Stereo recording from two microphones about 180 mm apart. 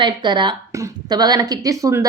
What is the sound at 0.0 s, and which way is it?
Speech, 25° right (ahead or behind).